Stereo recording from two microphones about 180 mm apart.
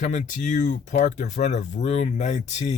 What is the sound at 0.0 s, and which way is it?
Speech, 45° left (ahead or behind).